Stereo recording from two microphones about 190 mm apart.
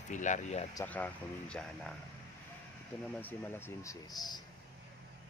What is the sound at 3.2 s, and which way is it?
Speech, 10° left (ahead or behind).